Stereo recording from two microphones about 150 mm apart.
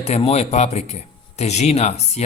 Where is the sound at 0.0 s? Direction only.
45° left (ahead or behind).